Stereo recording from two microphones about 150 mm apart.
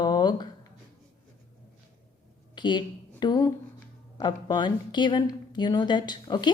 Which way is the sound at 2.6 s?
30° left (ahead or behind).